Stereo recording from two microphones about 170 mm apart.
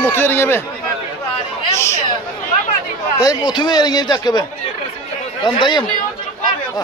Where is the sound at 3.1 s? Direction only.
25° left (ahead or behind).